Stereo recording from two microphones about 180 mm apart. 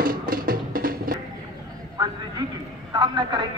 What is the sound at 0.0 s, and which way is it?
Music, 55° right (ahead or behind).